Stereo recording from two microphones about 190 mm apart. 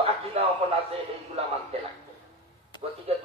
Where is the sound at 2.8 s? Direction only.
30° right (ahead or behind).